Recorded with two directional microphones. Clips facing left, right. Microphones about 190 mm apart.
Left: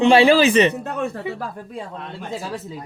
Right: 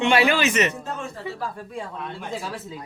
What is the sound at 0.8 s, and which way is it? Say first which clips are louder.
Speech: left 7 dB; 65° left (ahead or behind).